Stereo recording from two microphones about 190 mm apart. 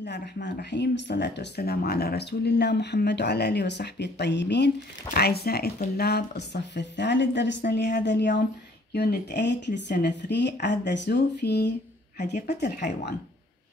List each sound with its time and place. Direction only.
0.0 s speech: 65° left (ahead or behind)
12.2 s a woman's voice: 40° left (ahead or behind)
12.5 s speech: 60° left (ahead or behind)